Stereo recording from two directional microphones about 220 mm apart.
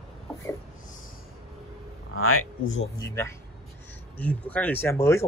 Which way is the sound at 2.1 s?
75° left (ahead or behind).